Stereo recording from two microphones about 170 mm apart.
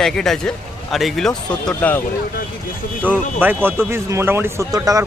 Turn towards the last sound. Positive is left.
turn(degrees=-20)  # may be behind; listen again after turning